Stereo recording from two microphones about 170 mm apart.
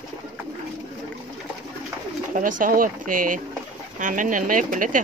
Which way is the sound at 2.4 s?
50° right (ahead or behind).